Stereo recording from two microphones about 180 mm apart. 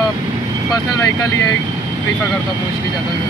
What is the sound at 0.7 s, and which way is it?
Speech, 20° left (ahead or behind).